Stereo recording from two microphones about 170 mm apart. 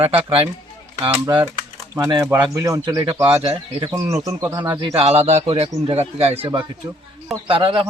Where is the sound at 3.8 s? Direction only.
20° right (ahead or behind).